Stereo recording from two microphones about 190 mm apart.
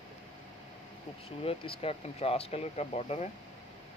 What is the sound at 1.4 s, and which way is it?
Speech, 30° left (ahead or behind).